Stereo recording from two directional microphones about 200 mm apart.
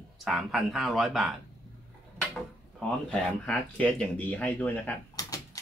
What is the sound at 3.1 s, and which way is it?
Speech, 5° left (ahead or behind).